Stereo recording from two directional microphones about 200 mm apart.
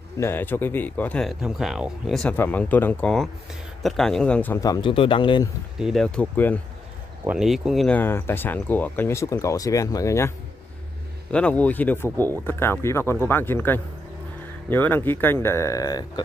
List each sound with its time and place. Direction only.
0.2 s speech: 10° left (ahead or behind)
5.8 s speech: centre (ahead or behind)
7.2 s speech: centre (ahead or behind); by 10.3 s 15° left (ahead or behind)
11.3 s speech: 5° left (ahead or behind)